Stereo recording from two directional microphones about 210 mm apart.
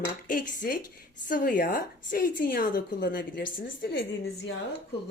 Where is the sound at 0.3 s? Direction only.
40° left (ahead or behind).